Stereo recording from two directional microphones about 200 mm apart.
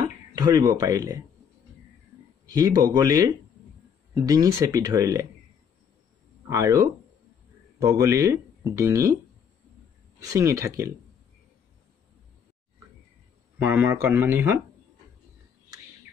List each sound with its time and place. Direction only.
0.0 s speech: 20° right (ahead or behind)
2.4 s speech: 15° right (ahead or behind)
6.5 s speech: 15° right (ahead or behind)
10.2 s speech: 15° right (ahead or behind)
13.6 s speech: 10° right (ahead or behind)